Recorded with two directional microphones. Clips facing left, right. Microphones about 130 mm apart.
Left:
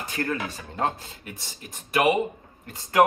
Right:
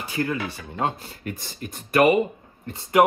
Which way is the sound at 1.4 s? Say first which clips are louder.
Right 7 dB; 50° right (ahead or behind).